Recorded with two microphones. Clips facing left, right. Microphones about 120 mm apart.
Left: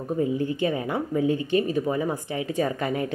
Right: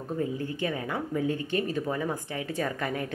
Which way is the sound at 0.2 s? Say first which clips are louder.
Left 7 dB; 15° left (ahead or behind).